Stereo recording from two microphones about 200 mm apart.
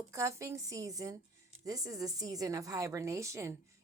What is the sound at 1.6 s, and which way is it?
A woman's voice, 15° right (ahead or behind).